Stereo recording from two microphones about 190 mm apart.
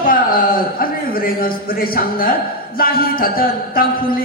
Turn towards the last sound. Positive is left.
turn(degrees=50)  # may be behind; listen again after turning